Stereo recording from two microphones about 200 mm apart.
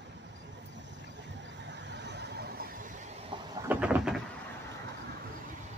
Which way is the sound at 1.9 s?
60° right (ahead or behind).